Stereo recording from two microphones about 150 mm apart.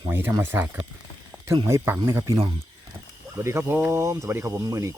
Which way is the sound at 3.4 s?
15° right (ahead or behind).